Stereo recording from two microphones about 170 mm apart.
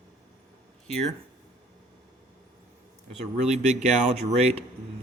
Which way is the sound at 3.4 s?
45° right (ahead or behind).